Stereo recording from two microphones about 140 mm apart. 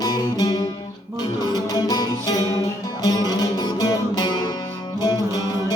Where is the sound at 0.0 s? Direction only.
30° left (ahead or behind).